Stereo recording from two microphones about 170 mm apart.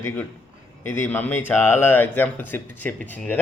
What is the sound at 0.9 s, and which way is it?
Speech, 10° left (ahead or behind).